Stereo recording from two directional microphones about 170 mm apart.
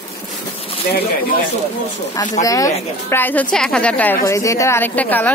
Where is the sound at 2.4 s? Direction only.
20° left (ahead or behind).